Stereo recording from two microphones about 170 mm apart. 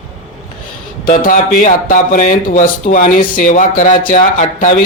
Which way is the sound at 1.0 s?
55° left (ahead or behind).